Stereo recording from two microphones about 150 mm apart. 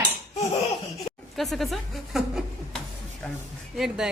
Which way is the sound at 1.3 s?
Centre (ahead or behind).